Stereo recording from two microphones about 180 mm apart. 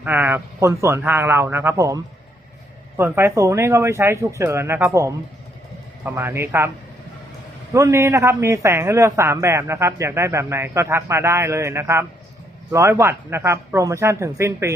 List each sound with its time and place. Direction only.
0.0 s a man's voice: 10° right (ahead or behind)
3.0 s a man's voice: 15° right (ahead or behind)
7.7 s a man's voice: 15° right (ahead or behind)